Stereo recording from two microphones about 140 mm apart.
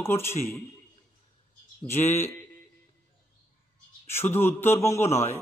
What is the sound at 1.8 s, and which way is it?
Speech, 15° left (ahead or behind).